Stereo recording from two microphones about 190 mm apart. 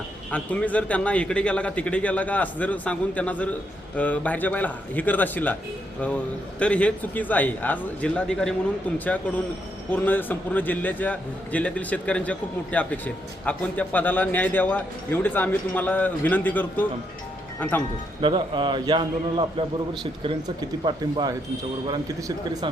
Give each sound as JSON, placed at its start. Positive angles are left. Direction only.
{"t": 0.3, "sound": "a man's voice", "side_deg": 5}
{"t": 6.6, "sound": "a man's voice", "side_deg": 5}
{"t": 18.2, "sound": "a man's voice", "side_deg": -25}